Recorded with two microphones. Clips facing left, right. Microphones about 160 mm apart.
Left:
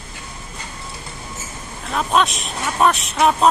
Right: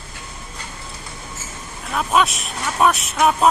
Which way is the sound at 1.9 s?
5° right (ahead or behind).